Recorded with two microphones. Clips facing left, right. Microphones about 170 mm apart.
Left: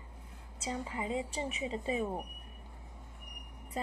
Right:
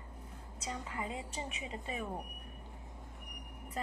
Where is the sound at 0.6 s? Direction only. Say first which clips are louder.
Left 4 dB; 25° left (ahead or behind).